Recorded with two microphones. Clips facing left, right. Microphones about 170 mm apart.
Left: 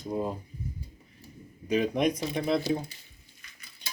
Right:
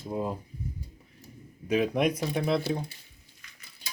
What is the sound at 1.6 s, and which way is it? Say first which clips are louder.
Speech: even; 5° right (ahead or behind).